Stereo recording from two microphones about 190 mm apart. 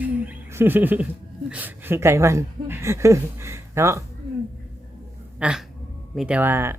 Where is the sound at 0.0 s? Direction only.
10° right (ahead or behind).